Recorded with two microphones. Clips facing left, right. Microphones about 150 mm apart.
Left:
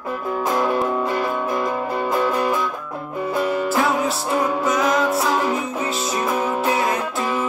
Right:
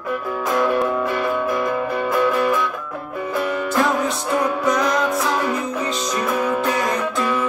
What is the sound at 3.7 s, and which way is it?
Music, 5° left (ahead or behind).